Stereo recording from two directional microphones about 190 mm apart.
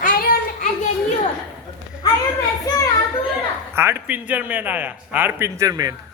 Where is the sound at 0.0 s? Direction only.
45° left (ahead or behind).